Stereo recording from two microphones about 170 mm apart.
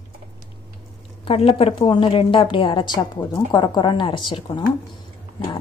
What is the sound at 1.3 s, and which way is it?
A woman's voice, 35° left (ahead or behind).